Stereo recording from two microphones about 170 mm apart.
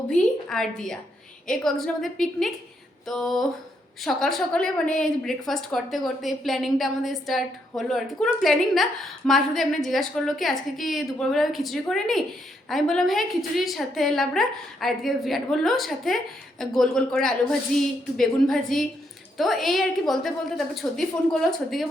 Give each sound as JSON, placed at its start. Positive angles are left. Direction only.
{"t": 0.1, "sound": "a woman's voice", "side_deg": 5}